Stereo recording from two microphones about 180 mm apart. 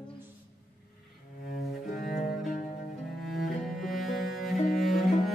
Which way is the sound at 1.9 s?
50° left (ahead or behind).